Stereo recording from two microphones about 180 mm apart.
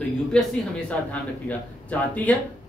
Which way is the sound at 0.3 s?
5° left (ahead or behind).